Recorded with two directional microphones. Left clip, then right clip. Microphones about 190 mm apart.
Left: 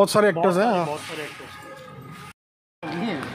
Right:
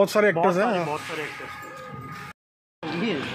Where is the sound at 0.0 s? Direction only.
20° left (ahead or behind).